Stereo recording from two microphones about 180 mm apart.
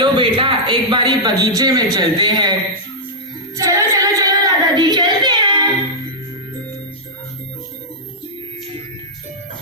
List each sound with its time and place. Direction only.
0.0 s a man's voice: 30° right (ahead or behind)
3.5 s singing: 15° right (ahead or behind)